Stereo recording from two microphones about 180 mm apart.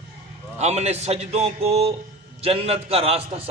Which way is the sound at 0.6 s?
40° right (ahead or behind).